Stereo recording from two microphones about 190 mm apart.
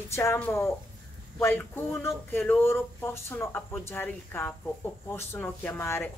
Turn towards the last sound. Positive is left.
turn(degrees=10)  # may be behind; listen again after turning